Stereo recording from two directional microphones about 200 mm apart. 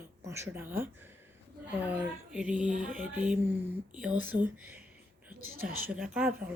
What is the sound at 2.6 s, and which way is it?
Music, 40° right (ahead or behind).